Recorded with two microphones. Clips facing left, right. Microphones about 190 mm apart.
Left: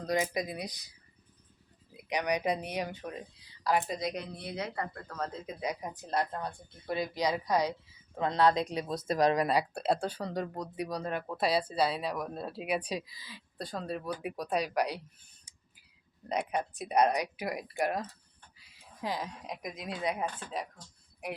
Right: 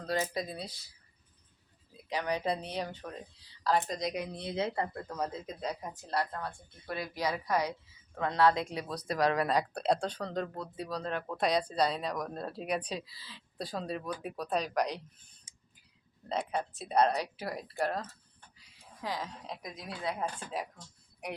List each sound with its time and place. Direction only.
0.0 s speech: 15° left (ahead or behind)
4.4 s speech: 25° right (ahead or behind)
5.3 s speech: 10° left (ahead or behind)
13.6 s speech: centre (ahead or behind)
16.3 s speech: 15° left (ahead or behind)